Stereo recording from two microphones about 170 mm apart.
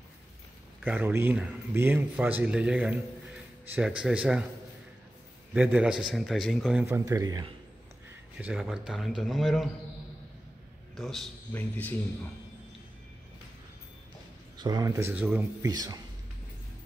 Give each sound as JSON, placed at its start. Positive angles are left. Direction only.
{"t": 0.8, "sound": "speech", "side_deg": -10}
{"t": 5.5, "sound": "a man's voice", "side_deg": -5}
{"t": 6.9, "sound": "speech", "side_deg": -20}
{"t": 8.4, "sound": "a man's voice", "side_deg": -10}
{"t": 11.0, "sound": "a man's voice", "side_deg": 0}
{"t": 14.6, "sound": "speech", "side_deg": -20}
{"t": 15.6, "sound": "speech", "side_deg": -20}